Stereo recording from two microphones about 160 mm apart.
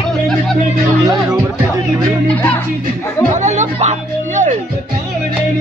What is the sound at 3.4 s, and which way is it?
Music, 45° right (ahead or behind).